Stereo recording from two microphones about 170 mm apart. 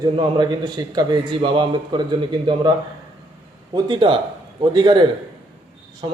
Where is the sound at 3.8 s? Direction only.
30° right (ahead or behind).